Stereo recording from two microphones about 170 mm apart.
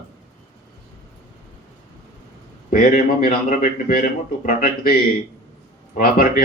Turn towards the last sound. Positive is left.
turn(degrees=55)  # may be behind; listen again after turning